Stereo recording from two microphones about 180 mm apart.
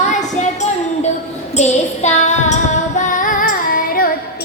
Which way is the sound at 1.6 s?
40° left (ahead or behind).